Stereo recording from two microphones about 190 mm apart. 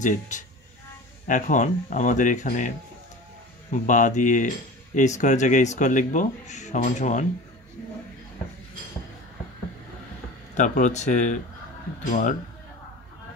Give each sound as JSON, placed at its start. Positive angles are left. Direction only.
{"t": 0.3, "sound": "speech", "side_deg": 40}
{"t": 3.7, "sound": "speech", "side_deg": 40}
{"t": 10.5, "sound": "speech", "side_deg": 40}